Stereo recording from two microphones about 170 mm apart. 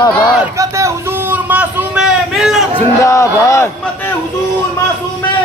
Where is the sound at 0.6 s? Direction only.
15° right (ahead or behind); by 2.6 s centre (ahead or behind).